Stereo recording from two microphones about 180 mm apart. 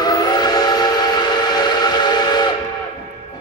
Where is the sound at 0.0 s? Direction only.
20° left (ahead or behind).